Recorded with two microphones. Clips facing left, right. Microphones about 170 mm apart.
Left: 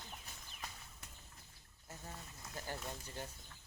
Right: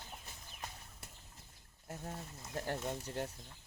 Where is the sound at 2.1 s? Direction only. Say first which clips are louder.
Right 4 dB; 30° right (ahead or behind).